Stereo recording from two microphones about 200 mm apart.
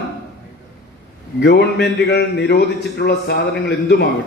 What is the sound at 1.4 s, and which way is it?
A man's voice, 55° left (ahead or behind).